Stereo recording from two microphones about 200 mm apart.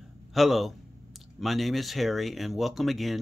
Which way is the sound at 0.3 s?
Centre (ahead or behind).